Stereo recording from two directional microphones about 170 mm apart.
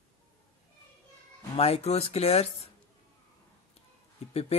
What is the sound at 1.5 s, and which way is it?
Speech, 40° left (ahead or behind).